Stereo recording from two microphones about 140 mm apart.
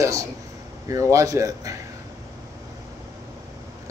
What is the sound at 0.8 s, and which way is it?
Speech, 20° right (ahead or behind).